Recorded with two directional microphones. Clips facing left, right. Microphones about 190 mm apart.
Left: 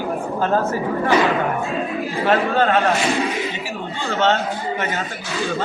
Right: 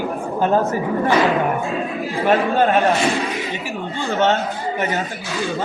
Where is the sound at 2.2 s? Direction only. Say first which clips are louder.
Right 1 dB; 15° right (ahead or behind).